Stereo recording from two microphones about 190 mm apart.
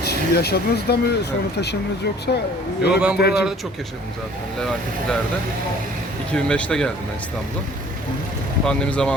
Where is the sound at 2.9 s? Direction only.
5° right (ahead or behind).